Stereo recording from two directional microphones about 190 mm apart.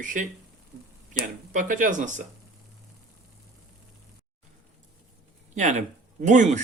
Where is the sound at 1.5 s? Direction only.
45° right (ahead or behind).